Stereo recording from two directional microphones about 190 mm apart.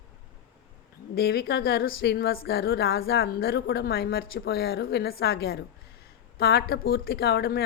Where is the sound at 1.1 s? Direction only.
55° left (ahead or behind).